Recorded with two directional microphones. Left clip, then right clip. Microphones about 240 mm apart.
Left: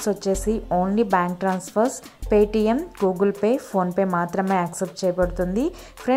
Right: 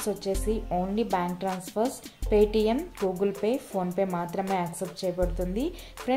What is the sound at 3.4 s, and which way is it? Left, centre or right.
Speech, left.